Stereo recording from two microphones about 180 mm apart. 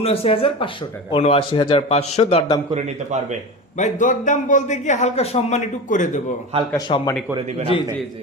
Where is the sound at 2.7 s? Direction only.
40° right (ahead or behind).